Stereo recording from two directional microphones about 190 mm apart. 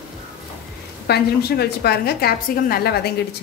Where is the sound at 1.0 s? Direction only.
60° left (ahead or behind).